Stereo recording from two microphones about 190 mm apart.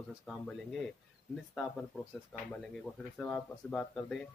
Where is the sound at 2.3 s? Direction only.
5° left (ahead or behind).